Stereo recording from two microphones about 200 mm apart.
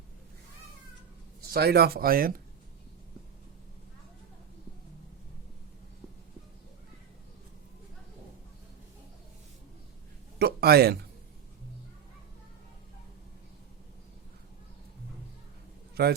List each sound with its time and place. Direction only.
1.5 s speech: 50° right (ahead or behind)
10.3 s a sound: 50° right (ahead or behind)
16.0 s speech: 55° right (ahead or behind)